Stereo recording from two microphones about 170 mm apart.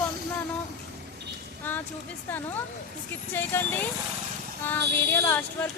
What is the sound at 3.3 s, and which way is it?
A woman's voice, 10° left (ahead or behind).